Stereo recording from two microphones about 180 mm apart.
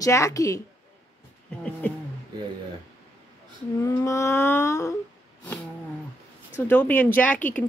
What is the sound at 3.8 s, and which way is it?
Speech, 15° left (ahead or behind).